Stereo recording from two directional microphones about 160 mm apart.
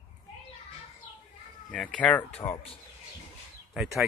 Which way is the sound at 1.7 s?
5° left (ahead or behind).